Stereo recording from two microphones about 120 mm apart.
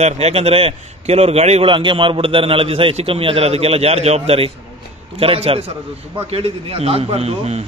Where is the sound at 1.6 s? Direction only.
45° right (ahead or behind).